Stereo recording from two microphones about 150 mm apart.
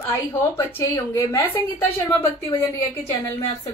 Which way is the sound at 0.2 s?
15° left (ahead or behind).